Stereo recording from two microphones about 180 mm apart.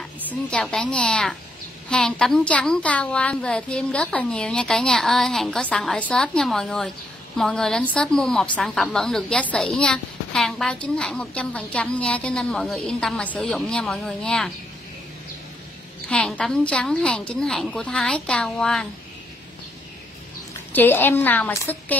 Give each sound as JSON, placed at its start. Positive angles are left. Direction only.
{"t": 0.3, "sound": "a woman's voice", "side_deg": 5}
{"t": 16.1, "sound": "a woman's voice", "side_deg": 5}
{"t": 20.7, "sound": "a woman's voice", "side_deg": 10}